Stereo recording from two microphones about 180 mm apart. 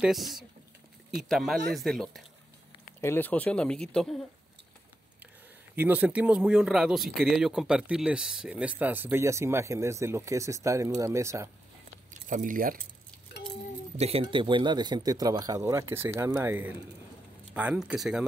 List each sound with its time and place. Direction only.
0.0 s speech: centre (ahead or behind)
3.0 s speech: 10° left (ahead or behind)
5.8 s speech: 10° right (ahead or behind)
12.1 s speech: 45° right (ahead or behind)
13.9 s speech: 35° right (ahead or behind); by 18.2 s 5° right (ahead or behind)